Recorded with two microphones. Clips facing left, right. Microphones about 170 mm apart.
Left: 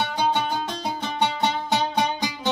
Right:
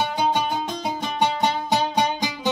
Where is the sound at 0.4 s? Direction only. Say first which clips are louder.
Right 1 dB; 5° right (ahead or behind).